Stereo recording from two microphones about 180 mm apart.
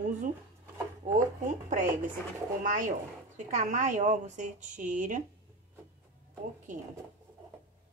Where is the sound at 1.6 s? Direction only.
45° right (ahead or behind).